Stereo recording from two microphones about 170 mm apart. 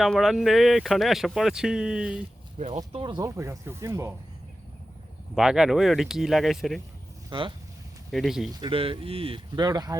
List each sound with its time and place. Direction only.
0.0 s speech: centre (ahead or behind)
2.6 s speech: 40° right (ahead or behind)
3.0 s speech: 25° right (ahead or behind)
5.3 s speech: 5° right (ahead or behind)
7.3 s speech: 30° right (ahead or behind)
8.1 s speech: centre (ahead or behind)
8.6 s speech: 30° right (ahead or behind)